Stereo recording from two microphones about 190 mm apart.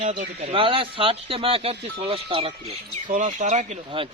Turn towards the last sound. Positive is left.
turn(degrees=-40)  # may be behind; listen again after turning